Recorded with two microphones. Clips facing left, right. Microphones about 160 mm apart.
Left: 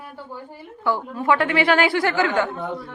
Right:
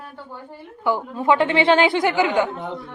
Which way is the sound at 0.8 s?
20° right (ahead or behind).